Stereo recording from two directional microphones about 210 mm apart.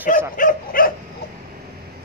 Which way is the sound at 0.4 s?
40° left (ahead or behind).